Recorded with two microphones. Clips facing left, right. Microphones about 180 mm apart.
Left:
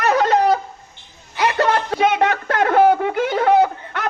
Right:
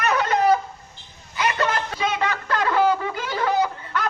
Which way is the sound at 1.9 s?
65° left (ahead or behind).